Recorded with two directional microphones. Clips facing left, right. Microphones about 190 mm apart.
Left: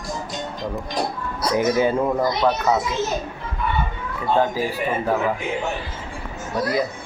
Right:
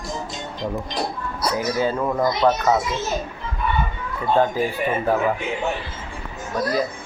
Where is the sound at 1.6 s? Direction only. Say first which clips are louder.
Left 5 dB; 20° left (ahead or behind).